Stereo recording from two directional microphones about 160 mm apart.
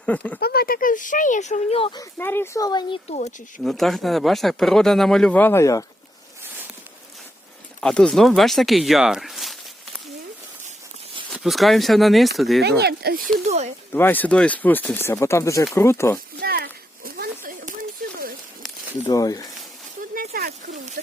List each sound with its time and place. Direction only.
0.0 s speech: 10° left (ahead or behind)
0.3 s speech: 75° left (ahead or behind); by 2.0 s 35° left (ahead or behind)
2.1 s speech: 15° left (ahead or behind)
3.1 s speech: 45° left (ahead or behind)
3.6 s speech: centre (ahead or behind); by 5.8 s 20° left (ahead or behind)
7.8 s speech: 5° left (ahead or behind)
11.3 s speech: centre (ahead or behind)
12.6 s speech: 85° right
13.5 s speech: 45° right (ahead or behind)
13.9 s speech: 10° left (ahead or behind)
16.4 s a sound: 70° right (ahead or behind)
19.0 s speech: 25° left (ahead or behind)
20.1 s a sound: 70° right (ahead or behind)